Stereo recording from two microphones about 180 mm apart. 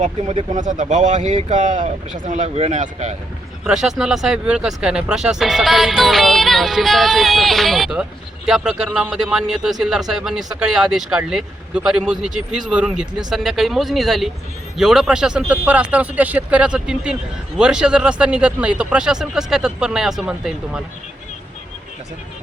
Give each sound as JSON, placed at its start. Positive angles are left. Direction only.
{"t": 0.0, "sound": "speech", "side_deg": -35}
{"t": 3.6, "sound": "a man's voice", "side_deg": -5}